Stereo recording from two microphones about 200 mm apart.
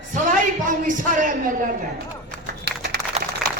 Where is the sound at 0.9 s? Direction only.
40° right (ahead or behind).